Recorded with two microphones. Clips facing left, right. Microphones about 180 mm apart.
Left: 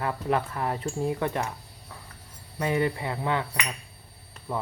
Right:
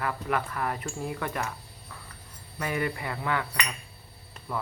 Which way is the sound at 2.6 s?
25° left (ahead or behind).